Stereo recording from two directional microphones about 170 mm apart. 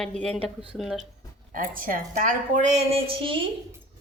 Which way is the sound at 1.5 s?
55° right (ahead or behind).